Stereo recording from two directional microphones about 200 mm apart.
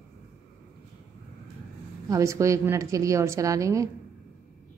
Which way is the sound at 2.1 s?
15° right (ahead or behind).